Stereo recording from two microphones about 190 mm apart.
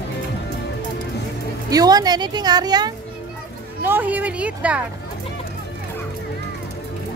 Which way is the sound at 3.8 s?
10° right (ahead or behind).